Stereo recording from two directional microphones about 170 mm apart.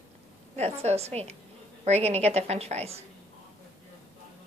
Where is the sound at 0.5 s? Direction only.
40° right (ahead or behind).